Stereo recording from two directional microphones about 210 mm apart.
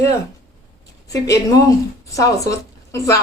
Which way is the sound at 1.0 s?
15° left (ahead or behind).